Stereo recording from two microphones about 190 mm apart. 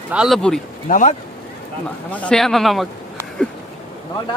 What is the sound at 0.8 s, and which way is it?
Speech, 40° left (ahead or behind).